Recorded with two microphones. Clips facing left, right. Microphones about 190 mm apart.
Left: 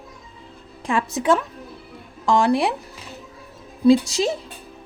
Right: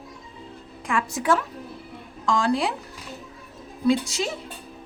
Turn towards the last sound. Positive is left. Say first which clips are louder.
# left 6 dB
turn(degrees=35)  # may be behind; listen again after turning